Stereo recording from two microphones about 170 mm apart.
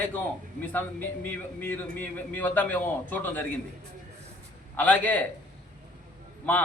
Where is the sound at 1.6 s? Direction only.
10° left (ahead or behind).